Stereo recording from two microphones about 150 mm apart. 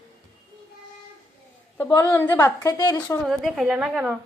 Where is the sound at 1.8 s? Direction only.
15° left (ahead or behind).